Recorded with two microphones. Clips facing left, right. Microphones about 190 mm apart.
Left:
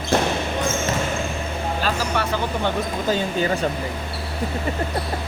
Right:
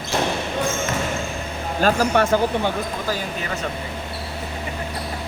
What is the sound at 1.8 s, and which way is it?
Speech, 50° right (ahead or behind).